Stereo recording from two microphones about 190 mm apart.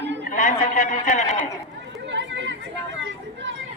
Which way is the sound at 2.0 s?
70° right (ahead or behind).